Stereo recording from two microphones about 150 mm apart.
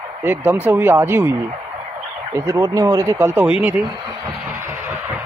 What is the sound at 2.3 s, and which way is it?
Speech, 20° right (ahead or behind).